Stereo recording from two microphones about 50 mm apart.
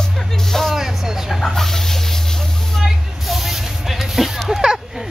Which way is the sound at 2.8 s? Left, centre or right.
Centre.